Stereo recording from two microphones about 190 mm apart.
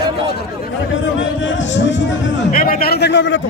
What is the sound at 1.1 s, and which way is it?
Speech, 80° left.